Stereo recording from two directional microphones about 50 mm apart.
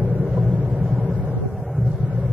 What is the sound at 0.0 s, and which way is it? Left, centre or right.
Vehicle, centre.